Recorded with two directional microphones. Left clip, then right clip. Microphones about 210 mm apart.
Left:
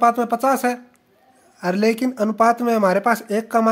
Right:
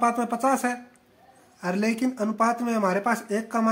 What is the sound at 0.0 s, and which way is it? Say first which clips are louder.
Speech: left 7 dB; 40° left (ahead or behind).